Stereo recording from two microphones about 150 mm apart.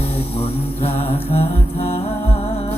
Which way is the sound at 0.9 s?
15° left (ahead or behind).